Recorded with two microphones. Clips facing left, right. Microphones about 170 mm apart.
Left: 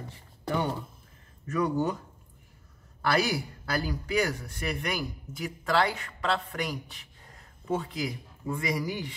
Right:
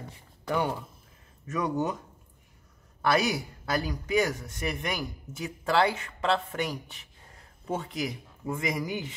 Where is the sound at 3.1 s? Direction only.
20° right (ahead or behind).